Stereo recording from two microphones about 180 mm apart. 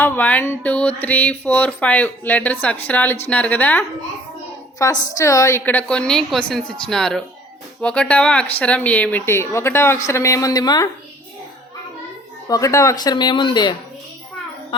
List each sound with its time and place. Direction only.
0.0 s a woman's voice: 10° left (ahead or behind)
12.5 s speech: 20° left (ahead or behind)